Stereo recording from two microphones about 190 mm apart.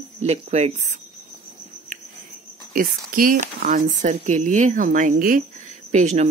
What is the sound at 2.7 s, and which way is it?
Speech, 45° right (ahead or behind).